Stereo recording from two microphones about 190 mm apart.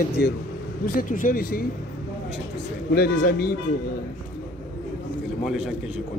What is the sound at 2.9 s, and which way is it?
Speech, 55° left (ahead or behind).